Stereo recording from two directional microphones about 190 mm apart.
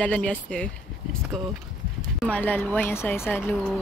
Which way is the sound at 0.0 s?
5° left (ahead or behind).